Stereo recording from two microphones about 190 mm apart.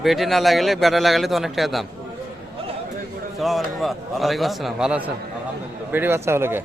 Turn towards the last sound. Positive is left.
turn(degrees=-10)  # may be behind; listen again after turning